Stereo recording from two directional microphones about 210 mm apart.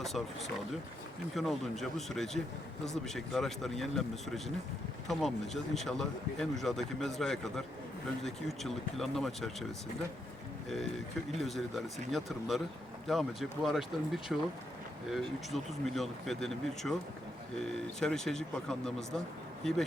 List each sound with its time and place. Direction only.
0.0 s speech: centre (ahead or behind)
11.3 s speech: centre (ahead or behind)
18.0 s speech: 5° left (ahead or behind)